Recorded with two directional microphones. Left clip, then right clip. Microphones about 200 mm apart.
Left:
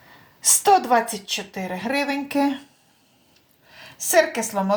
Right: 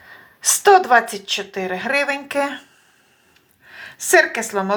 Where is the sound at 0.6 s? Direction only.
20° right (ahead or behind).